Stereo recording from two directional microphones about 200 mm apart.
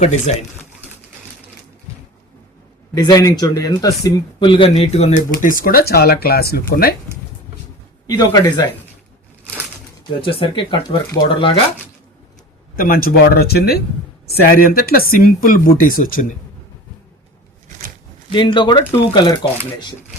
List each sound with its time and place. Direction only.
0.0 s speech: 35° left (ahead or behind)
2.9 s speech: 20° left (ahead or behind); by 6.9 s 50° left (ahead or behind)
8.0 s speech: 20° left (ahead or behind)
10.2 s speech: 25° left (ahead or behind)
12.7 s speech: 45° left (ahead or behind)
18.3 s speech: 25° left (ahead or behind)